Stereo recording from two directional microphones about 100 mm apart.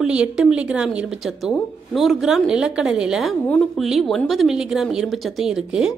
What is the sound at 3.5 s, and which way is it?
Speech, centre (ahead or behind).